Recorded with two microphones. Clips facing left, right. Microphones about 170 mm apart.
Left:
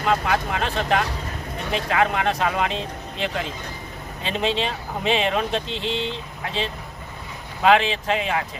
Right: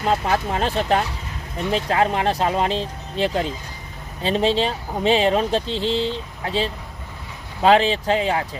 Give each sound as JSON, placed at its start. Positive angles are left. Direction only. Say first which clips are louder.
{"t": 0.0, "sound": "speech", "louder": "right 1 dB", "side_deg": -35}